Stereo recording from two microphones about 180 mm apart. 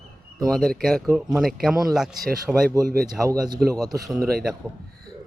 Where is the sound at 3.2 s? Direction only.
20° right (ahead or behind).